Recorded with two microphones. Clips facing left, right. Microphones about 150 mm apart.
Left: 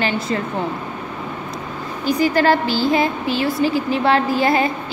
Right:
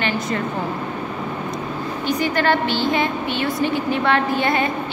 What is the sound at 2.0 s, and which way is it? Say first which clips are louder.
A woman's voice: left 4 dB; 35° left (ahead or behind).